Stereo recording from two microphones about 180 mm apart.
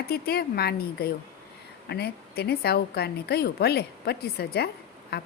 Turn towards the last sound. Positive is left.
turn(degrees=65)  # may be behind; listen again after turning